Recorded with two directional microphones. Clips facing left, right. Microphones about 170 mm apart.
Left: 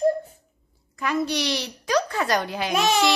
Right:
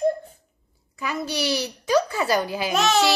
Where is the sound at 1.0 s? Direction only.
5° right (ahead or behind).